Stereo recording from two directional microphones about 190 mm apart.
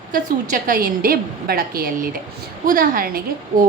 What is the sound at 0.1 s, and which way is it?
A woman's voice, 45° right (ahead or behind).